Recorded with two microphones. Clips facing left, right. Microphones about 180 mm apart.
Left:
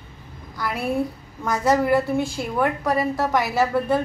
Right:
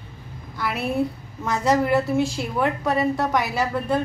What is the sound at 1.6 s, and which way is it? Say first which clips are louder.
A woman's voice: left 1 dB; centre (ahead or behind).